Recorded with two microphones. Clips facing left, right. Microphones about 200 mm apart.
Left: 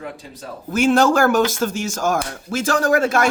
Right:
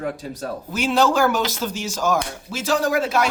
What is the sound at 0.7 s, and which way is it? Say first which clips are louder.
Speech: left 4 dB; 50° left (ahead or behind).